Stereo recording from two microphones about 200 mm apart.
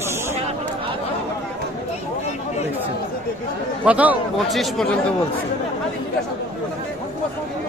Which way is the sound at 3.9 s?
5° right (ahead or behind).